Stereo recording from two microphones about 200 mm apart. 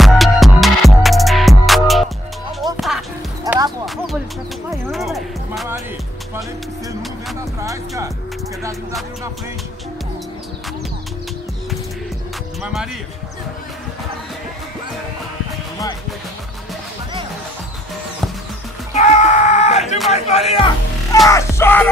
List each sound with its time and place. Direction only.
0.0 s music: centre (ahead or behind)
3.4 s clip-clop: 20° right (ahead or behind)
3.8 s a sound: centre (ahead or behind)
4.9 s music: centre (ahead or behind)
7.6 s music: 15° right (ahead or behind)
12.6 s music: 5° right (ahead or behind)
18.9 s a sound: 35° left (ahead or behind)
20.1 s music: 30° left (ahead or behind)
21.3 s music: 15° left (ahead or behind)